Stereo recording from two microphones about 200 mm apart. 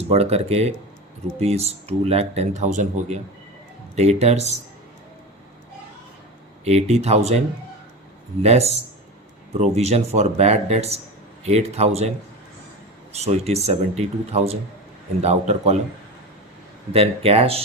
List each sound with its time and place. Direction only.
0.1 s speech: 30° right (ahead or behind)
6.7 s speech: 30° right (ahead or behind)
8.4 s speech: 35° right (ahead or behind)
13.1 s speech: 30° right (ahead or behind)
16.9 s speech: 30° right (ahead or behind)